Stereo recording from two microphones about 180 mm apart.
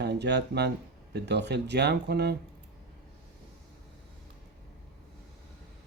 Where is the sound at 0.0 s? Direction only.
70° right (ahead or behind).